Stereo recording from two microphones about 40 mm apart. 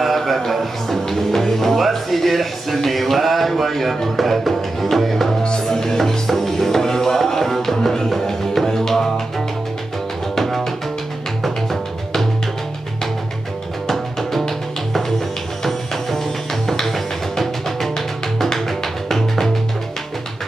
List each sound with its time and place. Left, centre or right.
0.0 s music: centre
5.4 s music: left
5.8 s music: centre
10.3 s music: centre
13.8 s music: centre